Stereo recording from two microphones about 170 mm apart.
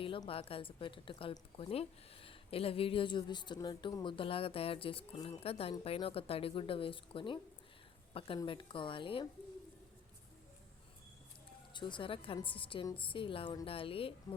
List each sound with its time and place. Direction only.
0.0 s a woman's voice: 30° left (ahead or behind)
8.4 s a woman's voice: 30° left (ahead or behind)
11.7 s a woman's voice: 25° left (ahead or behind)